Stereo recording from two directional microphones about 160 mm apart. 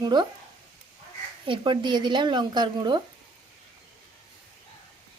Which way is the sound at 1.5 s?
30° right (ahead or behind).